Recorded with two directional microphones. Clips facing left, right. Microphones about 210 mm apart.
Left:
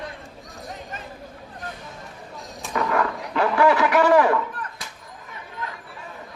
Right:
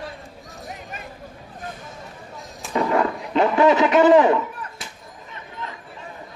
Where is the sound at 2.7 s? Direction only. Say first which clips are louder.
Right 3 dB; 25° right (ahead or behind).